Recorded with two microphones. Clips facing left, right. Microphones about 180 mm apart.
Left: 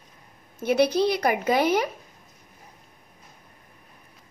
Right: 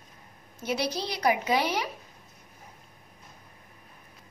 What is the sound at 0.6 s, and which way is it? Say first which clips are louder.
A woman's voice: left 10 dB; 55° left (ahead or behind).